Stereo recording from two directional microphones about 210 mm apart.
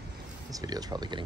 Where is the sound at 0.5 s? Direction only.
20° right (ahead or behind).